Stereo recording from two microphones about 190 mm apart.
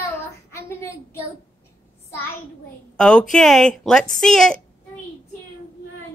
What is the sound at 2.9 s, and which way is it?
A woman's voice, 5° left (ahead or behind).